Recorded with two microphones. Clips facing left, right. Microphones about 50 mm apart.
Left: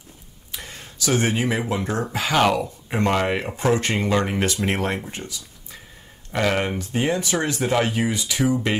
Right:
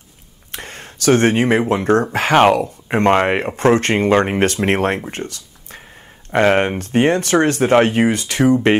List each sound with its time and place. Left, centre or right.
0.5 s speech: right
6.3 s speech: right
6.8 s speech: right